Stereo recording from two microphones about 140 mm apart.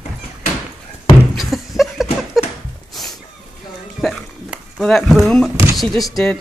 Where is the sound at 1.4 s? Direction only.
Centre (ahead or behind).